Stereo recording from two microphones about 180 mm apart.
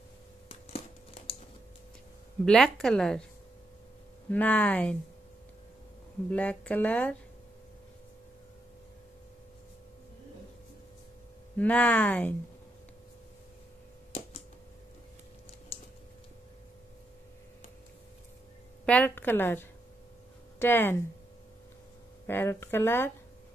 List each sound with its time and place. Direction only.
0.5 s a sound: 35° left (ahead or behind)
2.4 s a woman's voice: centre (ahead or behind)
4.3 s speech: 10° left (ahead or behind)
6.3 s speech: 5° left (ahead or behind)
11.5 s speech: 10° left (ahead or behind)
18.9 s speech: 10° left (ahead or behind)
22.2 s speech: 10° left (ahead or behind)